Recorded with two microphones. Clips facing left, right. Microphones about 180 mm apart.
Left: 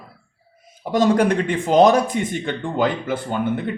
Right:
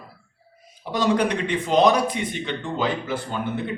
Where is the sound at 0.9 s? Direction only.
50° left (ahead or behind).